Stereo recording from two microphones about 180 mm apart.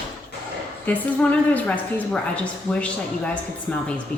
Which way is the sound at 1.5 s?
5° left (ahead or behind).